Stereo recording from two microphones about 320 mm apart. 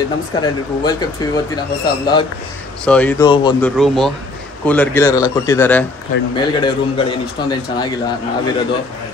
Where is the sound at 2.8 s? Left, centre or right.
Centre.